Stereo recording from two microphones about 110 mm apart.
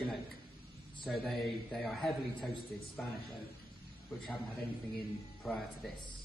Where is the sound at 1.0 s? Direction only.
Centre (ahead or behind).